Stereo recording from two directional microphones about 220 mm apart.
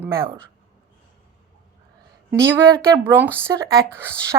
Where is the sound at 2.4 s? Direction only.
10° right (ahead or behind).